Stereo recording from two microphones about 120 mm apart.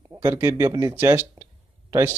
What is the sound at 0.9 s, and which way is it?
Speech, 20° right (ahead or behind).